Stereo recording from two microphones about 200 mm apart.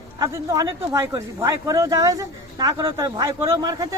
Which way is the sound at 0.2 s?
15° right (ahead or behind).